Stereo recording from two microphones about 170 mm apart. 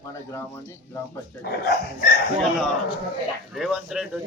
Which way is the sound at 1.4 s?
65° left (ahead or behind).